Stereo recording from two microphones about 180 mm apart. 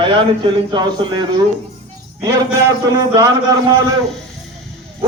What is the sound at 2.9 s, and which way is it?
Speech, 20° right (ahead or behind).